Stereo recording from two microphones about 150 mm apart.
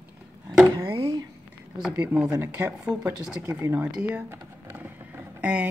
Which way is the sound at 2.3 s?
15° right (ahead or behind).